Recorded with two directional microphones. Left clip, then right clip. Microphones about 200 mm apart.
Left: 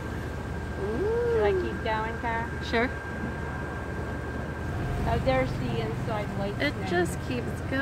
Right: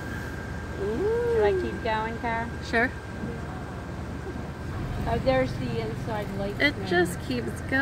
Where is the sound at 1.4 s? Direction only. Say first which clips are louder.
Right 1 dB; 55° right (ahead or behind).